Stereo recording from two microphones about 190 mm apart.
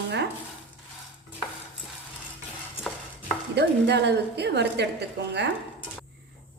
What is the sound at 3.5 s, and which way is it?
A woman's voice, 60° right (ahead or behind).